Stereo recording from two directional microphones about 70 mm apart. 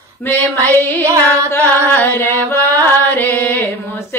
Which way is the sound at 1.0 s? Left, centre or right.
Right.